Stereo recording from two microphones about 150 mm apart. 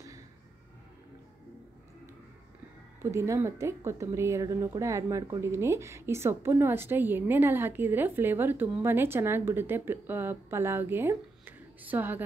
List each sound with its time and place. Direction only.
3.0 s speech: 20° right (ahead or behind)